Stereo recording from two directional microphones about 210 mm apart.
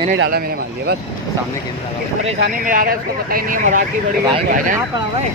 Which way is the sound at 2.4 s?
40° right (ahead or behind).